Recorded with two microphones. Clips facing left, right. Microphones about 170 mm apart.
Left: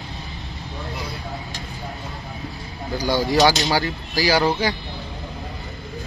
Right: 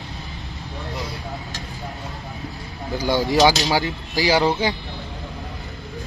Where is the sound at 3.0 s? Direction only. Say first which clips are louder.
Right 1 dB; 20° right (ahead or behind).